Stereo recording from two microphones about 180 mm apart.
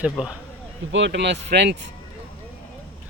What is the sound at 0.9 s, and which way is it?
Speech, 75° right (ahead or behind).